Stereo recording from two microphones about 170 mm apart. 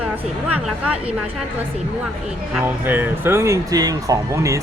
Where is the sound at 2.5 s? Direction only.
10° right (ahead or behind).